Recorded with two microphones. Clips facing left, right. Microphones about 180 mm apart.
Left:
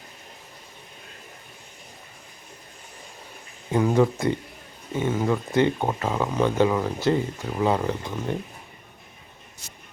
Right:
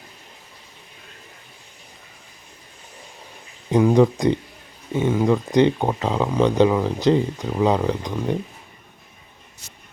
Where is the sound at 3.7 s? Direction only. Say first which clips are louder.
Right 5 dB; 15° right (ahead or behind).